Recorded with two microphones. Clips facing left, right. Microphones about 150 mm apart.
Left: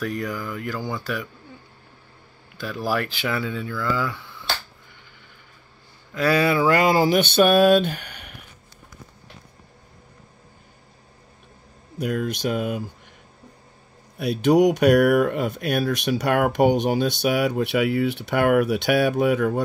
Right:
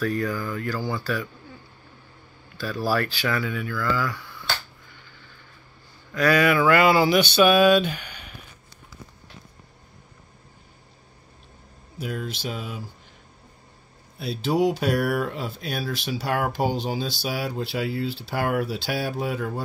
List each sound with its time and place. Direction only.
0.0 s speech: 20° left (ahead or behind)
2.5 s speech: 20° left (ahead or behind)
6.1 s a sound: 30° left (ahead or behind); by 8.4 s 55° left (ahead or behind)
12.0 s speech: 55° left (ahead or behind)
14.1 s speech: 55° left (ahead or behind)